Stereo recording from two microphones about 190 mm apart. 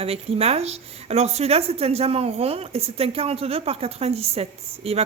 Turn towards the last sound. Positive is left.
turn(degrees=-30)  # may be behind; listen again after turning